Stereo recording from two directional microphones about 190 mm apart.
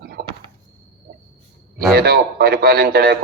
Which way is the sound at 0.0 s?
55° right (ahead or behind).